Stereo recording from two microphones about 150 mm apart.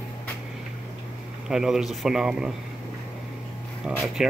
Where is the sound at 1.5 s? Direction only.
5° right (ahead or behind).